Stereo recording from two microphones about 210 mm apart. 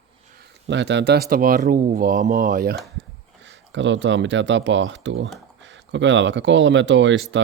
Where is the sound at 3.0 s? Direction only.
60° right (ahead or behind).